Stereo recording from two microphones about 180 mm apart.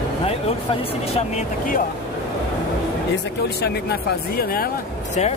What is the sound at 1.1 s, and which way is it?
Speech, 40° left (ahead or behind).